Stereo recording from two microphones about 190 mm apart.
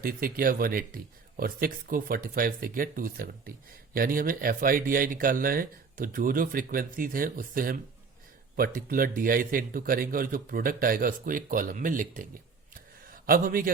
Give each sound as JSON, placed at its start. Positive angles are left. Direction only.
{"t": 0.0, "sound": "speech", "side_deg": -50}